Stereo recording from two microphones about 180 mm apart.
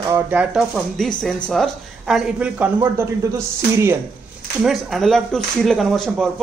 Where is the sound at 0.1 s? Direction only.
10° right (ahead or behind).